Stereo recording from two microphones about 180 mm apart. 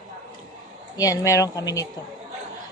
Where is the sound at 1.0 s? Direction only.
20° left (ahead or behind).